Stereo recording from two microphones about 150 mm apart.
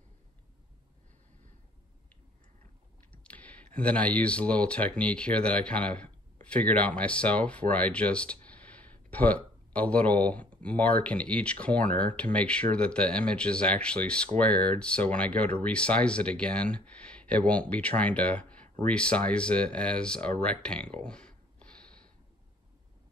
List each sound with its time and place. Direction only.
3.1 s speech: 10° left (ahead or behind)